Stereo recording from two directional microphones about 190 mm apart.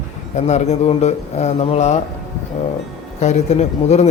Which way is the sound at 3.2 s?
35° left (ahead or behind).